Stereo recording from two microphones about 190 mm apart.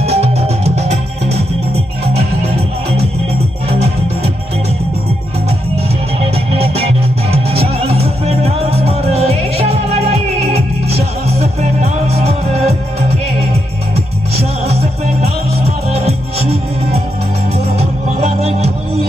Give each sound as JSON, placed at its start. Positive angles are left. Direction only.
{"t": 0.0, "sound": "music", "side_deg": -35}
{"t": 6.5, "sound": "music", "side_deg": -30}
{"t": 14.7, "sound": "music", "side_deg": -35}